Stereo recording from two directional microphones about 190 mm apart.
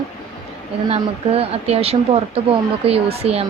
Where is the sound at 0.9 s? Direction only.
30° right (ahead or behind).